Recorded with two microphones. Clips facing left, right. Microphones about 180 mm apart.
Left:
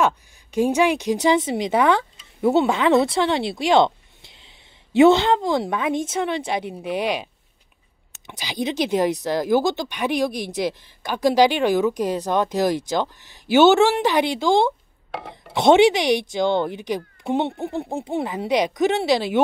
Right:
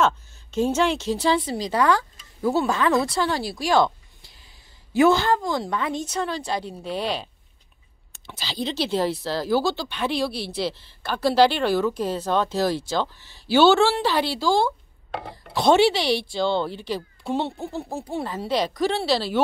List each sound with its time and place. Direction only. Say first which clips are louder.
0.0 s a woman's voice: left 1 dB; 15° left (ahead or behind)
8.3 s speech: left 3 dB; 15° left (ahead or behind)
15.0 s a sound: even; 5° left (ahead or behind)
15.5 s speech: left 3 dB; 20° left (ahead or behind)